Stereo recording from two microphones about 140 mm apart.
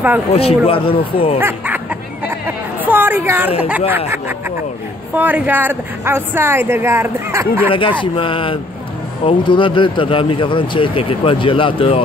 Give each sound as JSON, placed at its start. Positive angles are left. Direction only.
{"t": 0.3, "sound": "speech", "side_deg": 45}
{"t": 1.4, "sound": "hubbub", "side_deg": -15}
{"t": 5.1, "sound": "a woman's voice", "side_deg": -10}
{"t": 8.0, "sound": "speech", "side_deg": 40}